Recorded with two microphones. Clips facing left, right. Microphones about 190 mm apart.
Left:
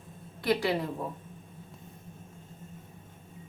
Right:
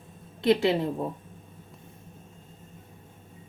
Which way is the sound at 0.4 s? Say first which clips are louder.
Right 5 dB; 25° right (ahead or behind).